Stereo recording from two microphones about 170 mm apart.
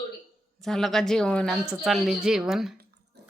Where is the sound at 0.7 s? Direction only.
Centre (ahead or behind).